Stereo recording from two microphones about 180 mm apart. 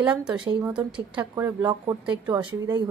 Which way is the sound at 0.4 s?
25° right (ahead or behind).